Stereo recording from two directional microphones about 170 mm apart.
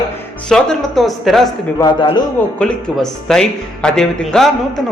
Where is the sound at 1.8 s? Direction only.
25° left (ahead or behind).